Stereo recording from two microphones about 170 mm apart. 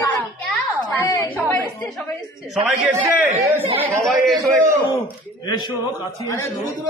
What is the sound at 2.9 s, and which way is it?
Speech, 40° right (ahead or behind).